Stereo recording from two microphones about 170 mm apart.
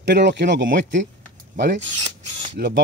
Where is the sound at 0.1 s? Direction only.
90° right.